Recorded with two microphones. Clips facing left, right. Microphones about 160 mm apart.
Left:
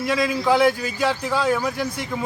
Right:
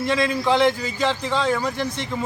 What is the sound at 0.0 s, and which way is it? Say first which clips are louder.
Speech: even; 5° left (ahead or behind).